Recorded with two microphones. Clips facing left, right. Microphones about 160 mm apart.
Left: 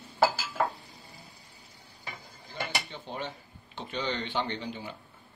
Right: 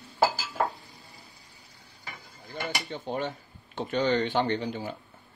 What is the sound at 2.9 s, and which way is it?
Speech, 50° right (ahead or behind).